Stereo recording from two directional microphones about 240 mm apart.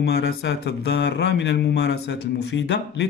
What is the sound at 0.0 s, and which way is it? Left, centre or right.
Mantra, left.